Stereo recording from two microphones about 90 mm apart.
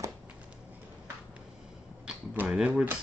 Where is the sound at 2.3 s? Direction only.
20° right (ahead or behind).